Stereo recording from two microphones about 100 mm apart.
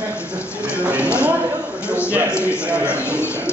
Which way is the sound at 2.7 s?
10° right (ahead or behind).